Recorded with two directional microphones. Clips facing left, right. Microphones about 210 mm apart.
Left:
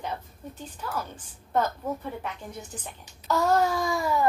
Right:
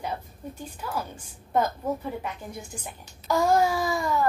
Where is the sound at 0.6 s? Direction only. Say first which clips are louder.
Right 1 dB; 10° right (ahead or behind).